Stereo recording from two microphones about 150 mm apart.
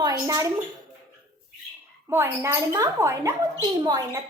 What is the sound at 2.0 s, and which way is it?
A woman's voice, 15° right (ahead or behind).